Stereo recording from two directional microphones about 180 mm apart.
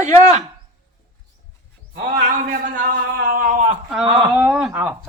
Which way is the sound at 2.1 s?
45° right (ahead or behind).